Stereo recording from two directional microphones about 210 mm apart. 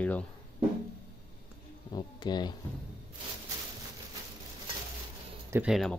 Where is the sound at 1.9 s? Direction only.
20° left (ahead or behind).